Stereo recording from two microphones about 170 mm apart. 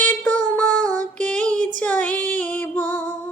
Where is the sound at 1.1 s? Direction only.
5° left (ahead or behind).